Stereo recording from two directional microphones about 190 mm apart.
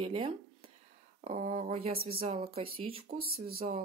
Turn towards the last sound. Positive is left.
turn(degrees=-55)  # may be behind; listen again after turning